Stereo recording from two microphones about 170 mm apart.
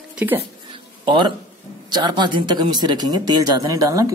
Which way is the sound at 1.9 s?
25° right (ahead or behind).